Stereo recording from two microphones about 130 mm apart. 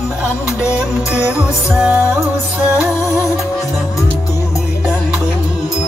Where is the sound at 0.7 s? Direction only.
10° right (ahead or behind).